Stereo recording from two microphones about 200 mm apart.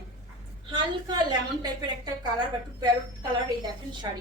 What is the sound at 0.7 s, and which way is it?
A woman's voice, 20° right (ahead or behind).